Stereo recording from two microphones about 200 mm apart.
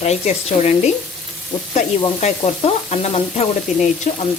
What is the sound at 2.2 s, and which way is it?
Frying, 35° left (ahead or behind).